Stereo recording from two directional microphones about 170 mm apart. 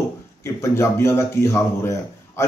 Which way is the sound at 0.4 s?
15° left (ahead or behind).